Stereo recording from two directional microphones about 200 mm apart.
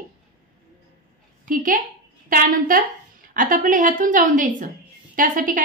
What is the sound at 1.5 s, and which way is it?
A woman's voice, 45° right (ahead or behind).